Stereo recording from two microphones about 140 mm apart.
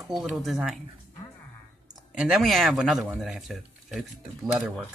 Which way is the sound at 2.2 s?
Centre (ahead or behind).